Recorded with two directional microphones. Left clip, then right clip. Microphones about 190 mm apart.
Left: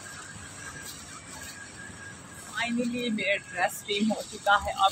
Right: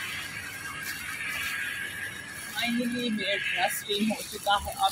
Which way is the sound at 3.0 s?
5° right (ahead or behind).